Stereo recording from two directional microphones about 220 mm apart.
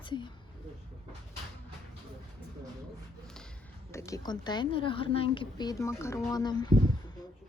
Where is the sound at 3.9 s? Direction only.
15° left (ahead or behind).